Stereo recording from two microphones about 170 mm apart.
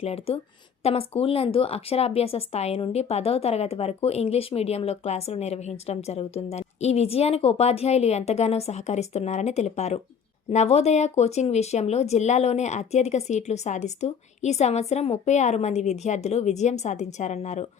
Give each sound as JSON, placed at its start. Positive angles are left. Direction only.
{"t": 0.0, "sound": "a woman's voice", "side_deg": 35}